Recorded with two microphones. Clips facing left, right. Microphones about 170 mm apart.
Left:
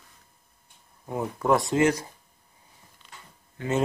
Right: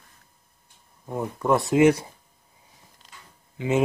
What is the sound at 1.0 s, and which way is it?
Speech, 5° left (ahead or behind).